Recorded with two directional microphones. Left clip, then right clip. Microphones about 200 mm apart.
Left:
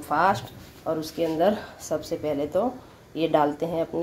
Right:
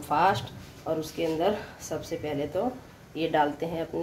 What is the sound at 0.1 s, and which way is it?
Speech, 15° left (ahead or behind).